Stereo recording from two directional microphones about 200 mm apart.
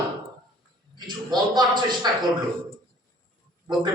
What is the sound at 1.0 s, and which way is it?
A man's voice, 20° right (ahead or behind).